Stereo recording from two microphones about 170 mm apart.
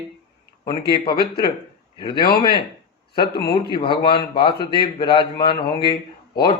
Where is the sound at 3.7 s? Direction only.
30° left (ahead or behind).